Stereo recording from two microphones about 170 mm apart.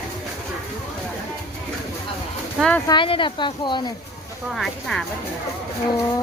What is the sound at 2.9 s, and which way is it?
Speech, 30° left (ahead or behind).